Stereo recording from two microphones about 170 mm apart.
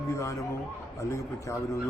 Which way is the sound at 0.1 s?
15° left (ahead or behind).